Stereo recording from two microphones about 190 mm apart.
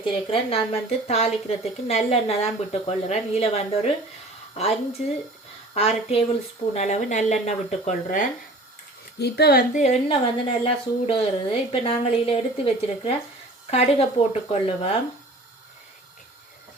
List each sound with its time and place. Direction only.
0.0 s speech: 30° left (ahead or behind)
9.1 s a woman's voice: 60° left (ahead or behind); by 14.8 s 30° left (ahead or behind)